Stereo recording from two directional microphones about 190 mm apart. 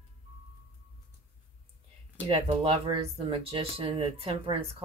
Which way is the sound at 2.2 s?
30° right (ahead or behind).